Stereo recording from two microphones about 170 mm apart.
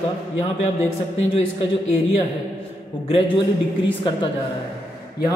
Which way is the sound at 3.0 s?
30° left (ahead or behind).